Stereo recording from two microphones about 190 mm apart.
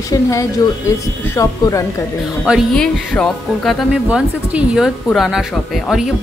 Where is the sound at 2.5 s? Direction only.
5° left (ahead or behind).